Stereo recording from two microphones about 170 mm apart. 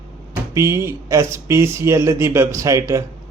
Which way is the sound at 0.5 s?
15° right (ahead or behind).